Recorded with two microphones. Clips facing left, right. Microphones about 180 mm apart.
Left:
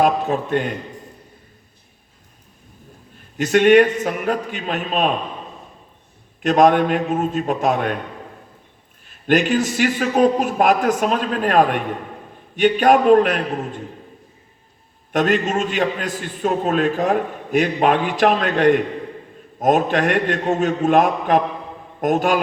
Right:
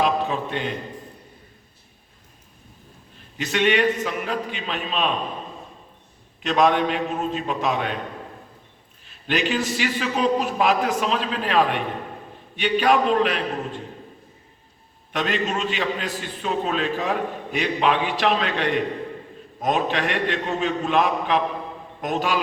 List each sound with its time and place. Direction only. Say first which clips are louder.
0.0 s a man's voice: left 4 dB; 50° left (ahead or behind)
3.3 s a man's voice: left 9 dB; 50° left (ahead or behind)
6.4 s a man's voice: left 5 dB; 50° left (ahead or behind)
9.0 s a man's voice: left 7 dB; 50° left (ahead or behind)
15.1 s a man's voice: left 6 dB; 50° left (ahead or behind)